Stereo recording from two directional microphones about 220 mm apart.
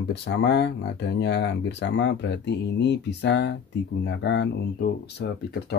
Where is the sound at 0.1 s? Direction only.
50° left (ahead or behind).